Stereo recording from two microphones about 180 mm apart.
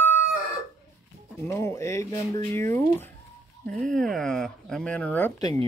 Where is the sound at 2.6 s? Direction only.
15° left (ahead or behind).